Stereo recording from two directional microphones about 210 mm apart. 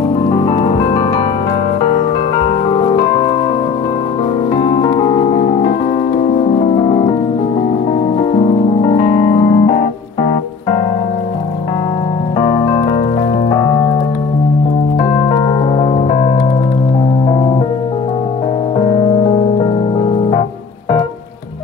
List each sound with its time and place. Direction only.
0.5 s music: 20° left (ahead or behind)
4.6 s music: 25° left (ahead or behind)
8.3 s music: 25° left (ahead or behind)
12.4 s music: 15° left (ahead or behind)
15.0 s music: 25° left (ahead or behind)